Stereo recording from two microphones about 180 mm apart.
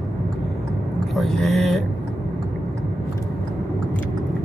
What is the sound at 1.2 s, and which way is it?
Speech, centre (ahead or behind).